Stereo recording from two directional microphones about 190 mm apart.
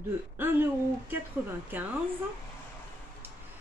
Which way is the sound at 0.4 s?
10° right (ahead or behind).